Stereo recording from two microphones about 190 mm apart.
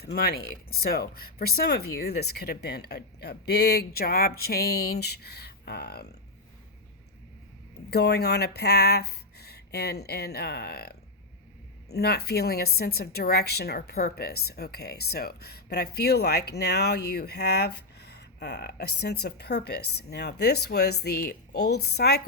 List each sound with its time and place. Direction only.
0.0 s a woman's voice: 55° left (ahead or behind)
7.9 s a woman's voice: 60° left (ahead or behind)